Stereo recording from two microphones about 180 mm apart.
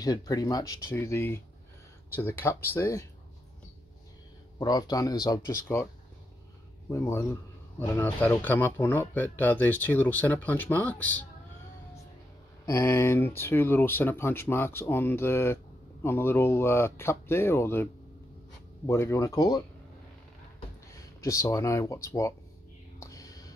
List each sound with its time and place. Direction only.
0.0 s speech: 20° left (ahead or behind)
4.6 s speech: 20° left (ahead or behind)
6.9 s speech: 15° left (ahead or behind)
12.6 s speech: 15° left (ahead or behind)
18.9 s speech: 15° left (ahead or behind)
20.9 s speech: 15° left (ahead or behind)
22.9 s whispering: 20° left (ahead or behind)